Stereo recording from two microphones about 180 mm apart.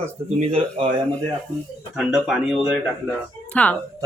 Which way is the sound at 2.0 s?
5° right (ahead or behind).